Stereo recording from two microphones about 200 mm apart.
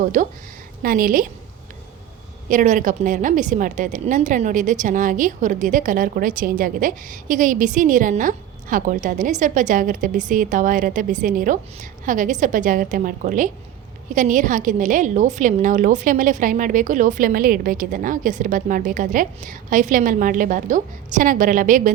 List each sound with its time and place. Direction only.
0.0 s a woman's voice: 40° right (ahead or behind)
2.5 s a woman's voice: 40° right (ahead or behind)